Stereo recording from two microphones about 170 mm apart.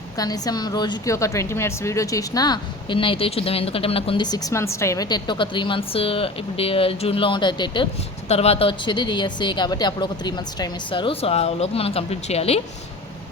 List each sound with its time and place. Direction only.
0.2 s a woman's voice: 20° left (ahead or behind)